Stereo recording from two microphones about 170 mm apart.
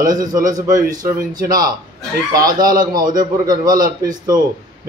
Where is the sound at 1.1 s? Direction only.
55° right (ahead or behind).